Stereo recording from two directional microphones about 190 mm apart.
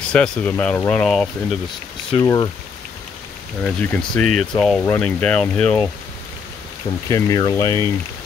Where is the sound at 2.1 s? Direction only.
20° left (ahead or behind).